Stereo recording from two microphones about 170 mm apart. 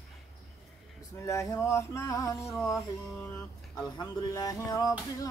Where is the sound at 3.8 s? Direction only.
20° left (ahead or behind).